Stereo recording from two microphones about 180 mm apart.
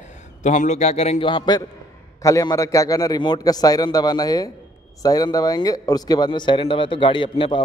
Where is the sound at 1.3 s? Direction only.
25° left (ahead or behind).